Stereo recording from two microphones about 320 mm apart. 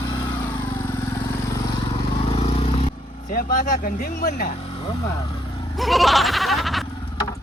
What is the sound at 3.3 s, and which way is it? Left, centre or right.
Speech, left.